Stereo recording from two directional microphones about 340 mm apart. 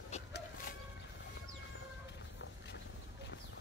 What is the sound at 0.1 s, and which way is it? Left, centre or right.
Chicken, left.